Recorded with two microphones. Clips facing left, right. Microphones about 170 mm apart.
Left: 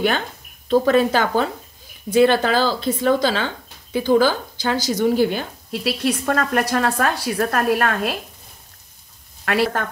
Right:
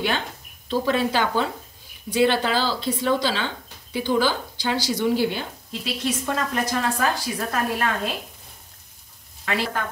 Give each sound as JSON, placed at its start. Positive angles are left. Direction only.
{"t": 0.7, "sound": "speech", "side_deg": 50}
{"t": 5.7, "sound": "a woman's voice", "side_deg": 65}
{"t": 9.4, "sound": "a woman's voice", "side_deg": 60}